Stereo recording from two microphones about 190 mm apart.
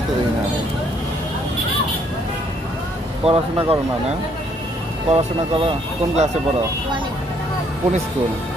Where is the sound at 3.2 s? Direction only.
30° right (ahead or behind).